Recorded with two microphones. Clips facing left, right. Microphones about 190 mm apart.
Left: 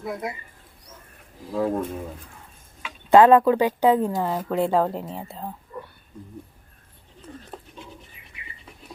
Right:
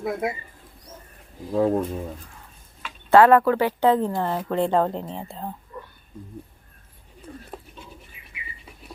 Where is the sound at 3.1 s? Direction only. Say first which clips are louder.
Left 1 dB; 15° left (ahead or behind).